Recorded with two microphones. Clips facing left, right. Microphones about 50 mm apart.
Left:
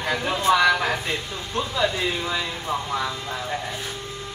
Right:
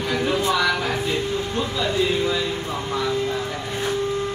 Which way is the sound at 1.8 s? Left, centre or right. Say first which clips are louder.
Right 3 dB; centre.